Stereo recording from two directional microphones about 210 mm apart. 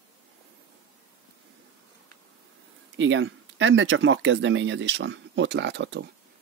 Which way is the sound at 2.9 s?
65° right (ahead or behind).